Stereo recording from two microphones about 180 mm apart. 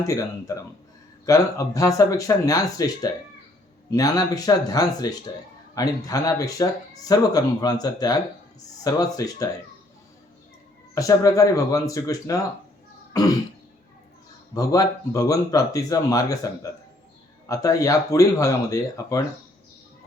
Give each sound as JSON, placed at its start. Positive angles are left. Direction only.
{"t": 1.2, "sound": "speech", "side_deg": 20}
{"t": 10.9, "sound": "speech", "side_deg": 20}
{"t": 14.5, "sound": "speech", "side_deg": 20}